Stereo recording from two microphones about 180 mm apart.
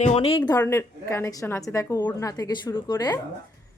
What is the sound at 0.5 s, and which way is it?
A woman's voice, 15° left (ahead or behind).